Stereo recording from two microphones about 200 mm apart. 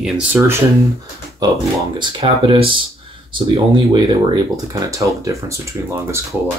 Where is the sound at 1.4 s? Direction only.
20° right (ahead or behind).